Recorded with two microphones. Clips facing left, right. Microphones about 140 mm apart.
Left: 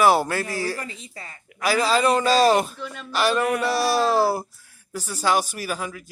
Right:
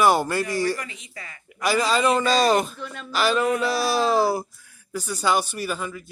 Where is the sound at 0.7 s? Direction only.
30° left (ahead or behind).